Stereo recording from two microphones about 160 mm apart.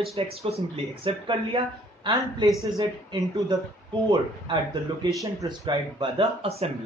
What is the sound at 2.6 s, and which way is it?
Speech, 30° right (ahead or behind).